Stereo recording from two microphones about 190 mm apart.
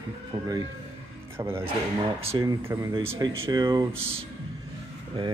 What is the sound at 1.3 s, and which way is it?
Speech, 10° right (ahead or behind).